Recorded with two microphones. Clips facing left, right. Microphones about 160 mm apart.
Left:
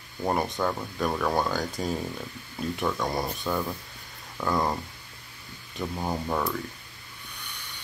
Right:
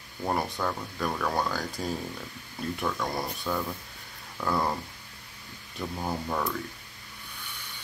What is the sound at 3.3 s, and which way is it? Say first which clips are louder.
Speech: left 2 dB; 5° left (ahead or behind).